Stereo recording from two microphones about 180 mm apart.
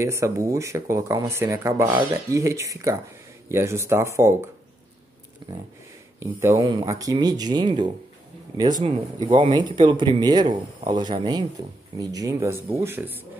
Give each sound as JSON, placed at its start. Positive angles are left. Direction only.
{"t": 0.0, "sound": "speech", "side_deg": -15}
{"t": 6.1, "sound": "speech", "side_deg": -15}